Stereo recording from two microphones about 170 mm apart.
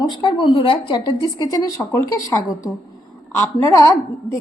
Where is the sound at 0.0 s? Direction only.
25° left (ahead or behind).